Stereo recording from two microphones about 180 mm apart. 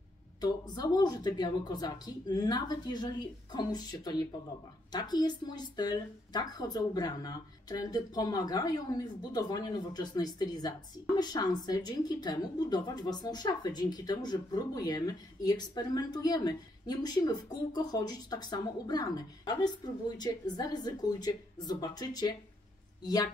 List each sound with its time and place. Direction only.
0.4 s a woman's voice: 25° left (ahead or behind)